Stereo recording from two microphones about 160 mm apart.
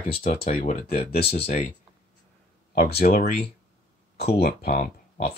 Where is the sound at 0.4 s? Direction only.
60° left (ahead or behind); by 1.5 s 80° left.